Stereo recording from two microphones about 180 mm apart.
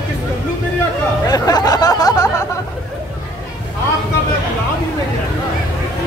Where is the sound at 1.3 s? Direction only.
20° left (ahead or behind).